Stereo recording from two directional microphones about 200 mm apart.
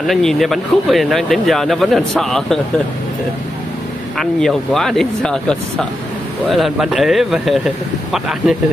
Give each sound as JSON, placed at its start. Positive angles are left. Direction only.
{"t": 0.0, "sound": "speech", "side_deg": 0}
{"t": 4.2, "sound": "speech", "side_deg": 0}